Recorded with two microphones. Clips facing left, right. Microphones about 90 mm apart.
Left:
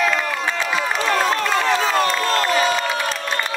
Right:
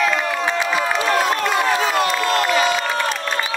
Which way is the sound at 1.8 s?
35° left (ahead or behind).